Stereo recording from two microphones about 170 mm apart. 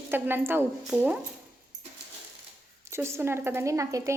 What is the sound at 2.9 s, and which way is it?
A woman's voice, 15° right (ahead or behind).